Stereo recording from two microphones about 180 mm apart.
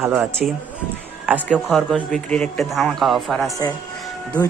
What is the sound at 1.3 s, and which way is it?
Speech, 5° right (ahead or behind).